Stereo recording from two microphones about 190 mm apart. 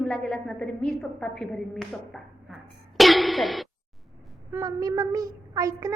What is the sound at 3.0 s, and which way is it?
Throat clearing, centre (ahead or behind).